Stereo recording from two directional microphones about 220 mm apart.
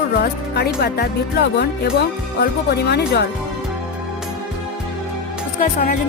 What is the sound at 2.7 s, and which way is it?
Music, 50° left (ahead or behind).